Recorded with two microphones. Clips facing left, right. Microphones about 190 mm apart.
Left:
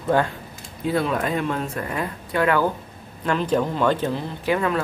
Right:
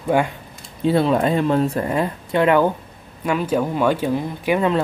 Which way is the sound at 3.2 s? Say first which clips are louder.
Right 1 dB; 10° right (ahead or behind).